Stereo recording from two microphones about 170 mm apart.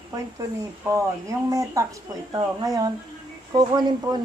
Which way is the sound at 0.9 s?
20° right (ahead or behind).